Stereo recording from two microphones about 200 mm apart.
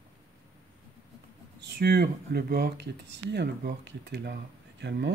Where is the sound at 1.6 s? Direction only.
55° right (ahead or behind).